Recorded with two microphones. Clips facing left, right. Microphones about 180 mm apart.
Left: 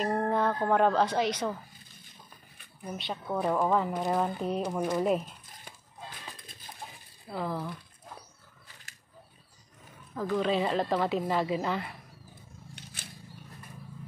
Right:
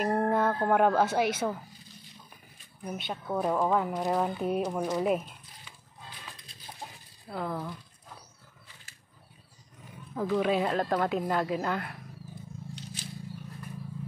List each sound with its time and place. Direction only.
0.0 s speech: 10° right (ahead or behind)
2.8 s speech: centre (ahead or behind)
7.2 s speech: centre (ahead or behind)
10.1 s speech: 10° right (ahead or behind)
12.7 s a sound: 55° left (ahead or behind)